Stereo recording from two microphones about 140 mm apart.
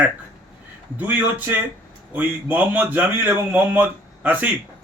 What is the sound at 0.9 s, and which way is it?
A man's voice, 10° right (ahead or behind).